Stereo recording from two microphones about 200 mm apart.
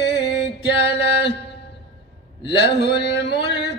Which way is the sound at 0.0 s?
60° left (ahead or behind).